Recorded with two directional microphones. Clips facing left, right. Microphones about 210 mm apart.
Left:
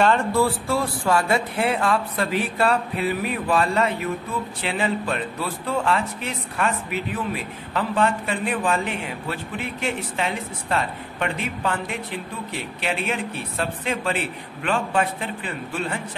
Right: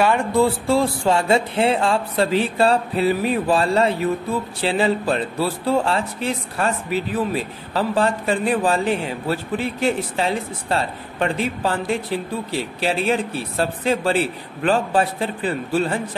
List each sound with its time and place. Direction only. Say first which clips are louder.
0.0 s speech: right 2 dB; 15° right (ahead or behind); by 16.0 s 35° right (ahead or behind)